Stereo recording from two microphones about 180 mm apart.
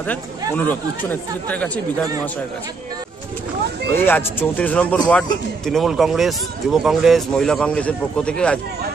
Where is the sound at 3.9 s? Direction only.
10° left (ahead or behind).